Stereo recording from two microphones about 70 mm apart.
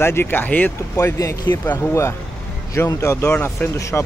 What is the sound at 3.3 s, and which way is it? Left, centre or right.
Speech, left.